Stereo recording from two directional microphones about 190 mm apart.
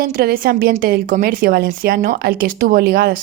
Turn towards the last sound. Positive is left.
turn(degrees=-55)  # may be behind; listen again after turning